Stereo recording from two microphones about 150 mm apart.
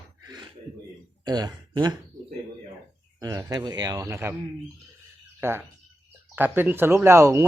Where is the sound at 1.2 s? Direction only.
30° right (ahead or behind).